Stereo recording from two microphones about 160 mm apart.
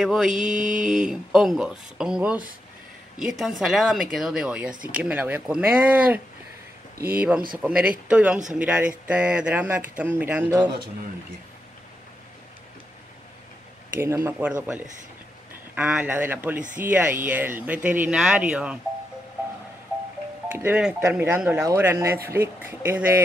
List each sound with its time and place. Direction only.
0.0 s speech: 5° right (ahead or behind)
13.9 s speech: 15° right (ahead or behind)
15.7 s speech: 10° right (ahead or behind)
20.5 s speech: 10° right (ahead or behind)